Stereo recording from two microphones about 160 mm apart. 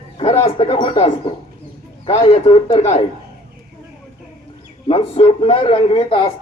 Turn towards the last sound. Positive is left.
turn(degrees=35)  # may be behind; listen again after turning